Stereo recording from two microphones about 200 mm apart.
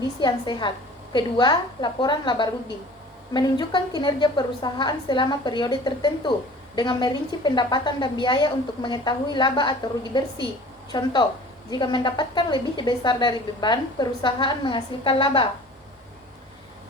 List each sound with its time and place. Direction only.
0.2 s a woman's voice: 20° left (ahead or behind)